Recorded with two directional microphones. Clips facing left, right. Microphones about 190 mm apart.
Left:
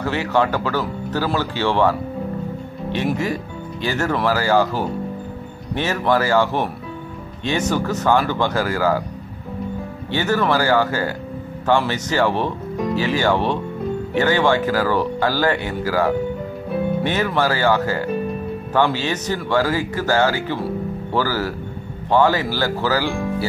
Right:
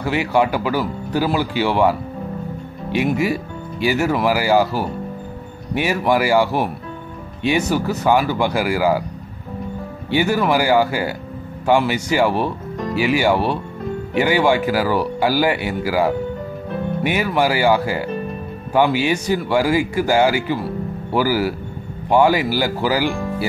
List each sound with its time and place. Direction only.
0.0 s speech: 10° right (ahead or behind)
3.8 s speech: 10° right (ahead or behind)
10.1 s speech: 10° right (ahead or behind)